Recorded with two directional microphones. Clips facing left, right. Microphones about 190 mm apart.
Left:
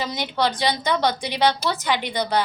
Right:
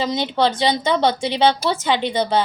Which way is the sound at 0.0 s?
25° right (ahead or behind).